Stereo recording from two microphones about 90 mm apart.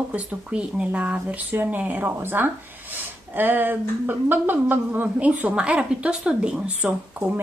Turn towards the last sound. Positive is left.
turn(degrees=-20)  # may be behind; listen again after turning